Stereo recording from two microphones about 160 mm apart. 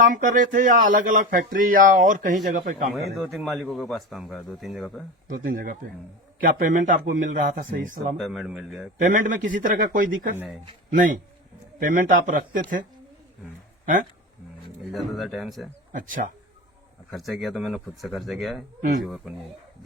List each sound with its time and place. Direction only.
0.1 s speech: 55° right (ahead or behind)
2.9 s a man's voice: centre (ahead or behind)
5.3 s speech: 60° right (ahead or behind)
8.2 s a man's voice: centre (ahead or behind)
9.0 s a man's voice: 55° right (ahead or behind)
11.8 s speech: 60° right (ahead or behind)
13.8 s speech: 60° right (ahead or behind)
14.9 s a man's voice: centre (ahead or behind)
15.9 s speech: 55° right (ahead or behind)
17.1 s a man's voice: centre (ahead or behind)